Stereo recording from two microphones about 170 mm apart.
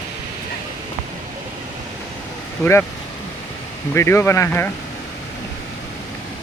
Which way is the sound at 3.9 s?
15° left (ahead or behind).